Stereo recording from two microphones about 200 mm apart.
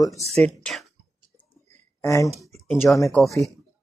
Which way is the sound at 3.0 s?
Centre (ahead or behind).